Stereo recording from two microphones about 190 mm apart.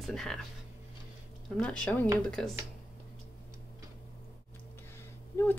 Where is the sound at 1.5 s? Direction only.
5° left (ahead or behind).